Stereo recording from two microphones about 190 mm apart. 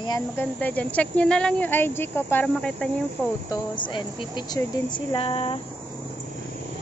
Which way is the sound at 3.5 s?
25° left (ahead or behind).